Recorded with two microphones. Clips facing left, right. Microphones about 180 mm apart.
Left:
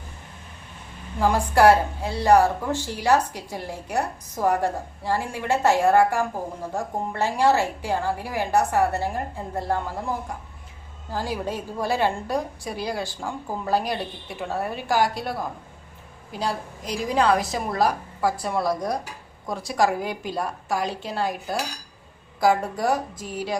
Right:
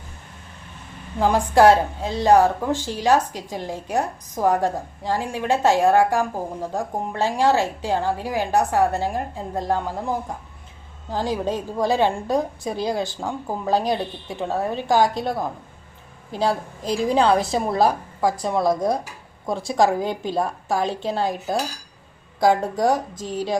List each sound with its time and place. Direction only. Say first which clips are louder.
1.2 s a woman's voice: right 2 dB; 20° right (ahead or behind)
16.3 s a woman's voice: right 6 dB; 25° right (ahead or behind)
22.4 s a woman's voice: right 3 dB; 20° right (ahead or behind)